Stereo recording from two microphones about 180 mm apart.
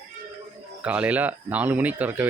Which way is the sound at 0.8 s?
5° right (ahead or behind).